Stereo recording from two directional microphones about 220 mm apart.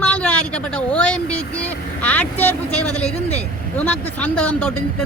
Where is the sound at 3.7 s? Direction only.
5° left (ahead or behind).